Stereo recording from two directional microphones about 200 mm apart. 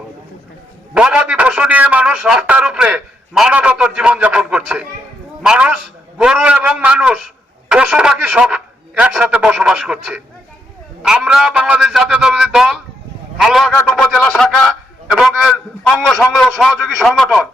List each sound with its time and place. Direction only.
0.9 s a man's voice: 5° right (ahead or behind)